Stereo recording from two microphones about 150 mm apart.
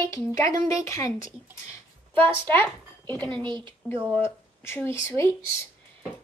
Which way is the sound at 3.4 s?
35° right (ahead or behind).